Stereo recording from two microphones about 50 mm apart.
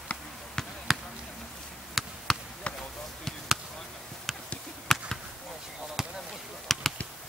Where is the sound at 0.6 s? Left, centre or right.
Centre.